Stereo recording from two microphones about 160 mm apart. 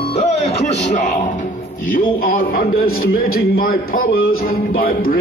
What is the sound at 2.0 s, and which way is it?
A man's voice, 65° left (ahead or behind).